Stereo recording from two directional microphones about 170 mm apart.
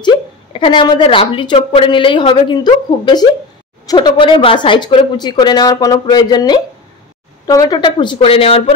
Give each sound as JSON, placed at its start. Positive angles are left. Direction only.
{"t": 0.0, "sound": "a woman's voice", "side_deg": 30}